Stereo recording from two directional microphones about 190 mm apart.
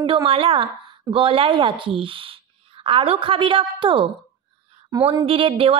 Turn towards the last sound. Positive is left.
turn(degrees=-30)  # may be behind; listen again after turning